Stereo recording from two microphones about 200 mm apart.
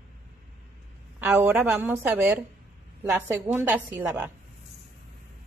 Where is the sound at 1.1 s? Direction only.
10° right (ahead or behind).